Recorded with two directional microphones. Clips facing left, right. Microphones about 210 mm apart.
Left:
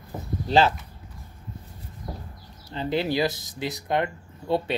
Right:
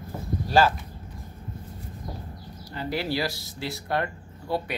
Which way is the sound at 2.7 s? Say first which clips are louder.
Left 4 dB; 20° left (ahead or behind).